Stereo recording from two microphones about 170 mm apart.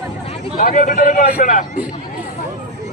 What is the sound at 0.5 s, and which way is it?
A man's voice, 50° left (ahead or behind).